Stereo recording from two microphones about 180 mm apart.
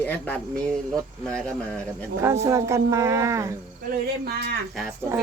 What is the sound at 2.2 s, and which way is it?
Speech, 15° right (ahead or behind).